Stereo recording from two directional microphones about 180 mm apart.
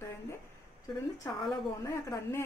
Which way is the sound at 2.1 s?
15° left (ahead or behind).